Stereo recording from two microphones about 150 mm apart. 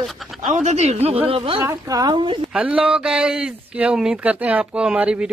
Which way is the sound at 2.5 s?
10° right (ahead or behind).